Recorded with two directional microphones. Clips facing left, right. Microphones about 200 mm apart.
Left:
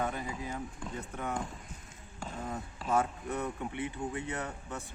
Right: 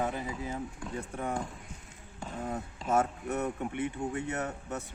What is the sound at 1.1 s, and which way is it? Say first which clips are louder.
Speech: right 2 dB; 30° right (ahead or behind).